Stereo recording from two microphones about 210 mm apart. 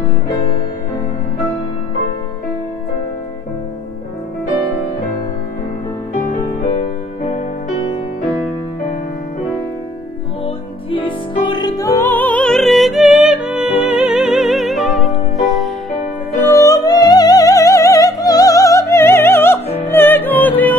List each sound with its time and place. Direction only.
7.2 s music: 25° left (ahead or behind)
10.4 s music: 25° left (ahead or behind); by 15.7 s centre (ahead or behind)
16.5 s music: 15° left (ahead or behind)